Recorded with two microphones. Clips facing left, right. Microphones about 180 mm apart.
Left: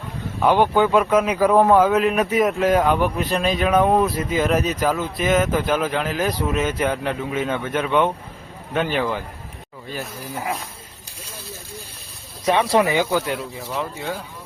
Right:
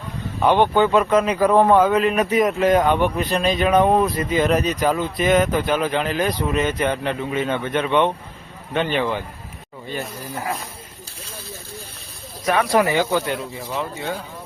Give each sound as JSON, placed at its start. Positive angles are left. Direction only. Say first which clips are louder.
{"t": 0.4, "sound": "speech", "louder": "even", "side_deg": 5}
{"t": 12.5, "sound": "speech", "louder": "left 1 dB", "side_deg": 25}
{"t": 12.8, "sound": "speech", "louder": "even", "side_deg": 15}
{"t": 13.1, "sound": "speech", "louder": "even", "side_deg": 5}